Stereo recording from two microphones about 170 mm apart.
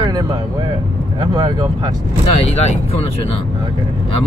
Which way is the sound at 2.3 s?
40° left (ahead or behind).